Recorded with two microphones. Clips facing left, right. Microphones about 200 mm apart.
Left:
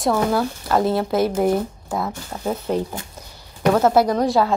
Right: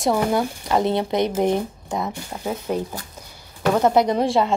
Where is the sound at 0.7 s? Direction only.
Centre (ahead or behind).